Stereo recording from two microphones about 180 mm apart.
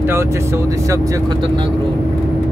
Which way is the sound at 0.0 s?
15° right (ahead or behind).